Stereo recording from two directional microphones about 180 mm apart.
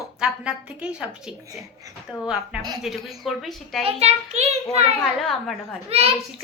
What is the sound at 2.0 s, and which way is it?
A woman's voice, 5° right (ahead or behind).